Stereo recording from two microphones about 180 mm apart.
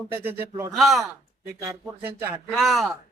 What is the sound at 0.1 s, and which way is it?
Speech, 10° right (ahead or behind).